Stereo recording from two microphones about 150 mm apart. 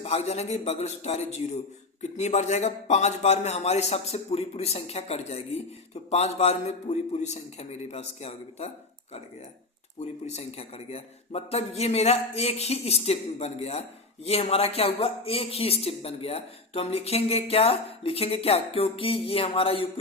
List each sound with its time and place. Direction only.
0.0 s a man's voice: 45° left (ahead or behind)
10.2 s a man's voice: 45° left (ahead or behind)